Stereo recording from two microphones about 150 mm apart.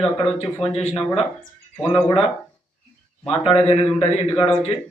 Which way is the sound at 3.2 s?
40° left (ahead or behind).